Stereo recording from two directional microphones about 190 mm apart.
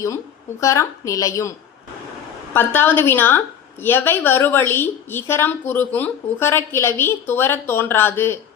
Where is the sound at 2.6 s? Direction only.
10° left (ahead or behind).